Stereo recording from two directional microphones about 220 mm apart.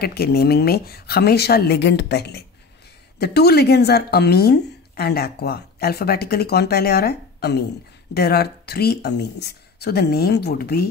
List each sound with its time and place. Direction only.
0.0 s a woman's voice: 45° left (ahead or behind)